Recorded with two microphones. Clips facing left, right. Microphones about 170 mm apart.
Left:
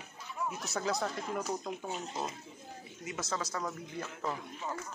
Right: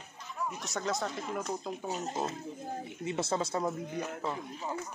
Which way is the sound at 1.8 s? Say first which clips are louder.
Right 4 dB; 45° right (ahead or behind).